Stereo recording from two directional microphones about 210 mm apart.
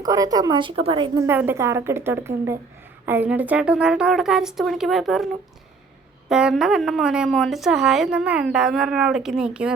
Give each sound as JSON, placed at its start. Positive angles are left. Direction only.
{"t": 0.0, "sound": "speech", "side_deg": -15}
{"t": 1.3, "sound": "speech", "side_deg": -10}